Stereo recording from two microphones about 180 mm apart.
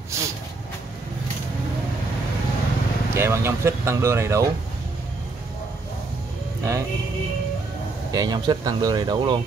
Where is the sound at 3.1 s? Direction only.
15° right (ahead or behind).